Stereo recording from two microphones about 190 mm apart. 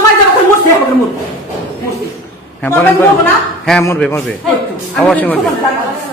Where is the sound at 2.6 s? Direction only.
10° left (ahead or behind).